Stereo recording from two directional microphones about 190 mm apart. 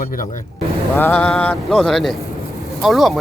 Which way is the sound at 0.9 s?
10° left (ahead or behind).